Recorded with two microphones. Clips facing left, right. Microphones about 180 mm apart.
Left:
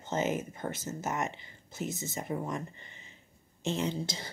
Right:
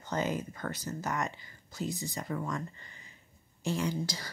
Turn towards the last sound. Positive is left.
turn(degrees=25)  # may be behind; listen again after turning